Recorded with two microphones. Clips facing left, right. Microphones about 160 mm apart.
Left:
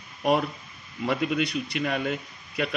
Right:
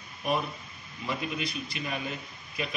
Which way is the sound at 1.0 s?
70° left (ahead or behind).